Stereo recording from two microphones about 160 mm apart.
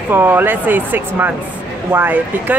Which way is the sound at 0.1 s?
15° right (ahead or behind).